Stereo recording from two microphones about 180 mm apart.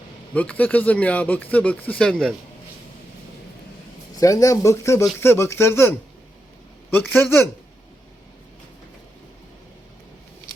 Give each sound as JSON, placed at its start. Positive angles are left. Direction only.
{"t": 0.3, "sound": "speech", "side_deg": 10}
{"t": 4.2, "sound": "speech", "side_deg": 20}